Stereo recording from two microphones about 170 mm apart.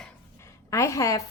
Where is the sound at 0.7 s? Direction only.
20° left (ahead or behind).